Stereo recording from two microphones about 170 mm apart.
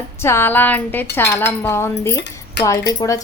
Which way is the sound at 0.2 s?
15° left (ahead or behind).